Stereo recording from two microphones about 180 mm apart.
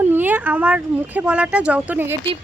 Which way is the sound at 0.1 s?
10° right (ahead or behind).